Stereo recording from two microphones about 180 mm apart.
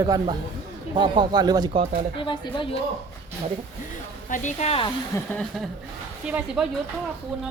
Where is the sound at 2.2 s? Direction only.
25° left (ahead or behind).